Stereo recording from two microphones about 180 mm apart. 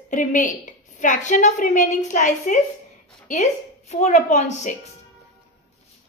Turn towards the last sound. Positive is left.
turn(degrees=40)  # may be behind; listen again after turning